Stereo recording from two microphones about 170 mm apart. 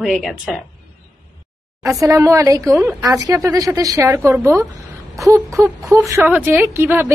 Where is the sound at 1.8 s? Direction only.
20° right (ahead or behind).